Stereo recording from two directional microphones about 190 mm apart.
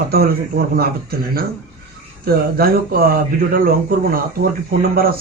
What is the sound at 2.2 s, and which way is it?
Speech, 55° right (ahead or behind).